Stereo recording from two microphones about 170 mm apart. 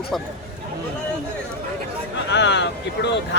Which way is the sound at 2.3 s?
90° left.